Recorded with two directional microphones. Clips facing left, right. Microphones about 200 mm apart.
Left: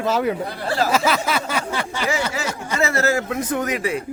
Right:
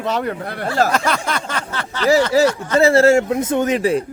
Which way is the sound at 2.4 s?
35° right (ahead or behind).